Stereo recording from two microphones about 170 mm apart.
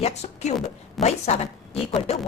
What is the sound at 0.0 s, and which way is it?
A woman's voice, 40° left (ahead or behind).